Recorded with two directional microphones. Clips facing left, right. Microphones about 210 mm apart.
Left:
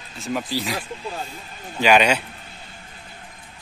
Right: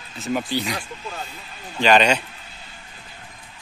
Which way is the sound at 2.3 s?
50° left (ahead or behind).